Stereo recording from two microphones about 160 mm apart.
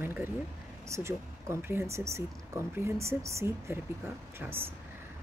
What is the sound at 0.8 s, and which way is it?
Speech, 15° right (ahead or behind).